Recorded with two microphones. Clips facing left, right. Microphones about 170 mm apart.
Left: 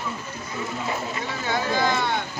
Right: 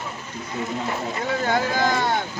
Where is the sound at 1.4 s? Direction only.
45° right (ahead or behind).